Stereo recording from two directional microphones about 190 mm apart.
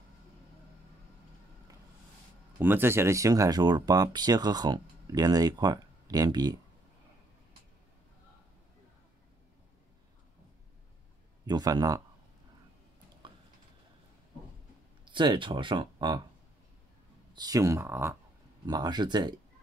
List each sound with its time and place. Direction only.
2.6 s speech: 10° right (ahead or behind)
11.4 s speech: 20° right (ahead or behind)
13.2 s a sound: 25° right (ahead or behind)
15.0 s speech: 25° right (ahead or behind)
17.3 s speech: 20° right (ahead or behind)